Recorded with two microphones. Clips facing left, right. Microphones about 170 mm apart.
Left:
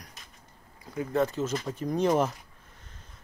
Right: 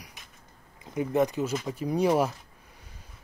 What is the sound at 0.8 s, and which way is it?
A man's voice, 20° right (ahead or behind).